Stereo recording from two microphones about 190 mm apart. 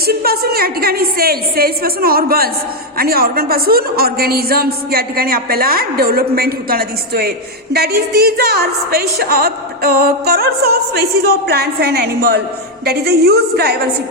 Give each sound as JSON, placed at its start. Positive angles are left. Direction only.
{"t": 0.0, "sound": "a woman's voice", "side_deg": -55}